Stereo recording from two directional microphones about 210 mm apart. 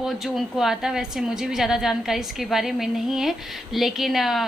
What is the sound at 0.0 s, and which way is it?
A woman's voice, centre (ahead or behind).